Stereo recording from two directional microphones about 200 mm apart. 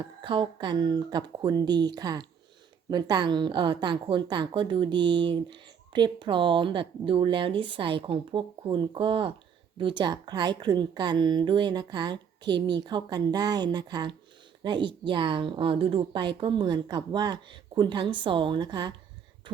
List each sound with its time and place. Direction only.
0.0 s a woman's voice: 25° right (ahead or behind)